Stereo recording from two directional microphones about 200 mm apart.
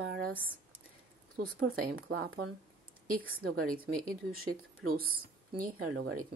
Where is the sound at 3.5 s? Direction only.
45° right (ahead or behind); by 6.2 s 65° right (ahead or behind).